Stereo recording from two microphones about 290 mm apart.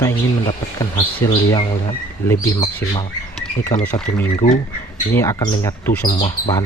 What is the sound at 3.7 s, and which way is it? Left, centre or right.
Speech, left.